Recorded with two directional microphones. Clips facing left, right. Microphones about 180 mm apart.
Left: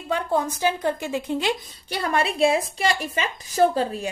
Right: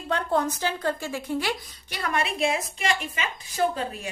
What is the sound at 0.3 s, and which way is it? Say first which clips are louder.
A woman's voice: left 3 dB; 10° left (ahead or behind).